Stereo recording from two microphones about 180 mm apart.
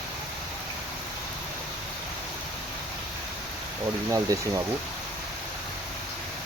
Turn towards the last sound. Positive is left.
turn(degrees=-20)  # may be behind; listen again after turning